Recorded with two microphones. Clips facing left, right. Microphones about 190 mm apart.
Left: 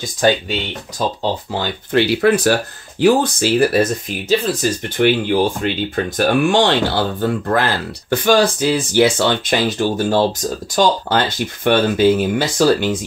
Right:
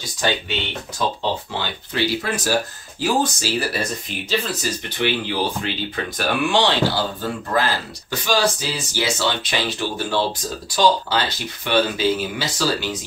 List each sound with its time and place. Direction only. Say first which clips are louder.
0.2 s speech: left 7 dB; 40° left (ahead or behind)
1.6 s speech: left 7 dB; 55° left (ahead or behind)